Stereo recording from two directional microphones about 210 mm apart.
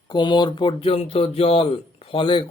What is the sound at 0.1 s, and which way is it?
Speech, 20° left (ahead or behind).